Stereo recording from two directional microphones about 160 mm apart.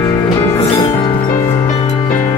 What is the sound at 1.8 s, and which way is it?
Music, 50° left (ahead or behind).